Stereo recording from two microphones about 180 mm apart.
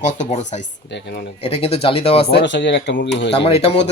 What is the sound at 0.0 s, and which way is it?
Speech, 40° left (ahead or behind).